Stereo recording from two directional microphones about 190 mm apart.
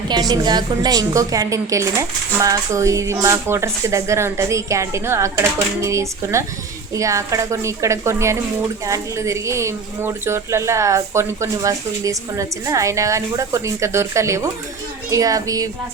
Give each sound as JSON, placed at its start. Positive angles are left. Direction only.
{"t": 0.1, "sound": "a woman's voice", "side_deg": -20}